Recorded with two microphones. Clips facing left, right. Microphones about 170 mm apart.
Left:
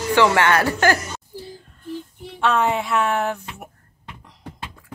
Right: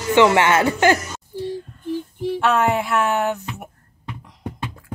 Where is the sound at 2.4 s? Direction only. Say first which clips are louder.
Even; 5° right (ahead or behind).